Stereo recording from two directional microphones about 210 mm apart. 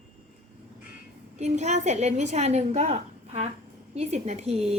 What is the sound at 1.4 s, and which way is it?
A woman's voice, 35° right (ahead or behind).